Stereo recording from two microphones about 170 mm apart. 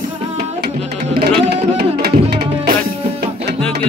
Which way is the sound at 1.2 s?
70° right (ahead or behind).